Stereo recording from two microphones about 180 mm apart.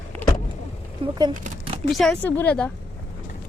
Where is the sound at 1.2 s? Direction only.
30° right (ahead or behind).